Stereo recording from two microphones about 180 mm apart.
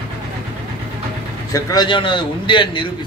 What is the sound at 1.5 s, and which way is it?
A man's voice, 20° left (ahead or behind).